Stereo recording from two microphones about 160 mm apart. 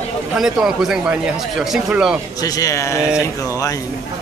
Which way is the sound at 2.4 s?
20° left (ahead or behind).